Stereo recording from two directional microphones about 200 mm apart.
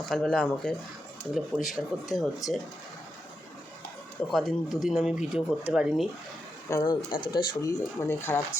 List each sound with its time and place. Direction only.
0.0 s speech: 5° left (ahead or behind)
4.3 s speech: centre (ahead or behind)
6.7 s speech: 20° left (ahead or behind)